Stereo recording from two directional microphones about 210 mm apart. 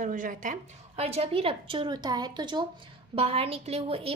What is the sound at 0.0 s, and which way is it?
A woman's voice, 40° right (ahead or behind).